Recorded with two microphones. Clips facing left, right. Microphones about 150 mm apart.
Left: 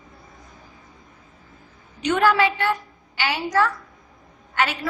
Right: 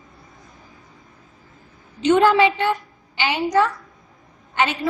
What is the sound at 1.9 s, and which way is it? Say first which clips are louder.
A woman's voice: right 4 dB; 25° right (ahead or behind).